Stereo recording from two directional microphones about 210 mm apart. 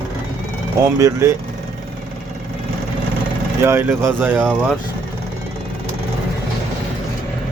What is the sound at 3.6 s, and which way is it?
Speech, 10° right (ahead or behind).